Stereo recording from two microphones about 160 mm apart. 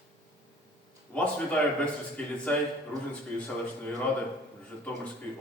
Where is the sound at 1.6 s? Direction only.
10° left (ahead or behind).